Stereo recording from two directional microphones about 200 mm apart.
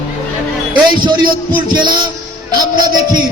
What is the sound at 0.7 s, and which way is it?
Speech, 20° right (ahead or behind).